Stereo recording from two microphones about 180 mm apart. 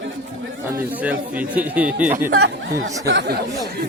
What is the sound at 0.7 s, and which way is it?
Speech, 10° right (ahead or behind).